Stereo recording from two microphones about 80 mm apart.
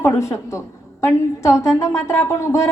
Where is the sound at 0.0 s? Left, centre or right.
Left.